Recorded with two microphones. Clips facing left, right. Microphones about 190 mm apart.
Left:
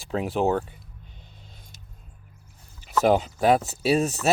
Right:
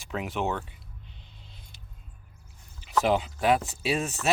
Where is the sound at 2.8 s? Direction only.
45° left (ahead or behind).